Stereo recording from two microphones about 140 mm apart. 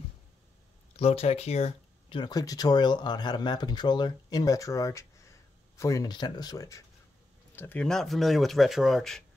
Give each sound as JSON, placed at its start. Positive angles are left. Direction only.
{"t": 0.9, "sound": "speech", "side_deg": 45}
{"t": 7.5, "sound": "speech", "side_deg": 15}